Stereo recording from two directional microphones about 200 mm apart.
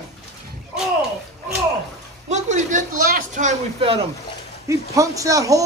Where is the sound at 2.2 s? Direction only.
35° right (ahead or behind).